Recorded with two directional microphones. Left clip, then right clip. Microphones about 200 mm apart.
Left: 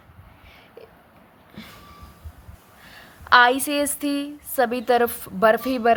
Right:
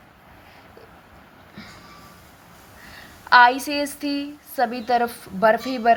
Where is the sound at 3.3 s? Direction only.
25° left (ahead or behind).